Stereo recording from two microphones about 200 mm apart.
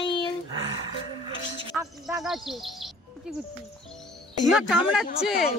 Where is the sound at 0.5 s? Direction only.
25° right (ahead or behind).